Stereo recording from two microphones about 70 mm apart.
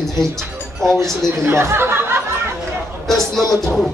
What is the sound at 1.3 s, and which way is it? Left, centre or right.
Speech, right.